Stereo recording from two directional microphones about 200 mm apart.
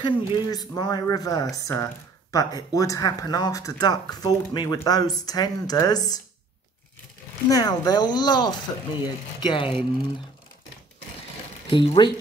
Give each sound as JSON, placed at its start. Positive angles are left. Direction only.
{"t": 0.0, "sound": "speech", "side_deg": 20}
{"t": 7.4, "sound": "speech", "side_deg": 20}
{"t": 11.7, "sound": "speech", "side_deg": 25}